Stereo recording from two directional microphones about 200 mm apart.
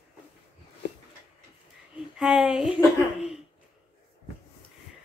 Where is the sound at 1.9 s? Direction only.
Centre (ahead or behind).